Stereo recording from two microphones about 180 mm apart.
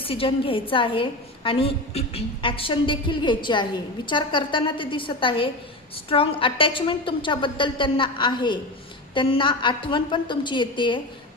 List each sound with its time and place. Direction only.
0.0 s a woman's voice: 30° left (ahead or behind)